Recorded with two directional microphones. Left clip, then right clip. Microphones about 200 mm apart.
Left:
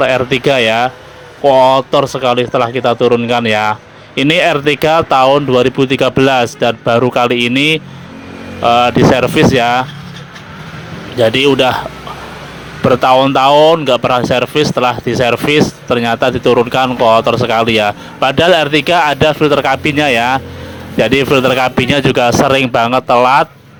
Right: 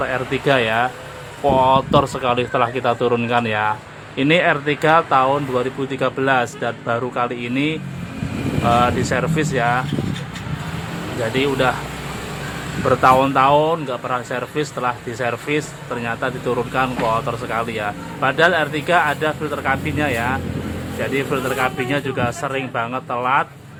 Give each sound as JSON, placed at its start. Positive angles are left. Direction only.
{"t": 0.0, "sound": "speech", "side_deg": 35}
{"t": 8.6, "sound": "speech", "side_deg": 35}
{"t": 12.9, "sound": "speech", "side_deg": 40}